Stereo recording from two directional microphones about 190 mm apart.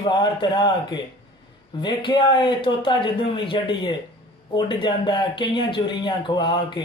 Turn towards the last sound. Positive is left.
turn(degrees=25)  # may be behind; listen again after turning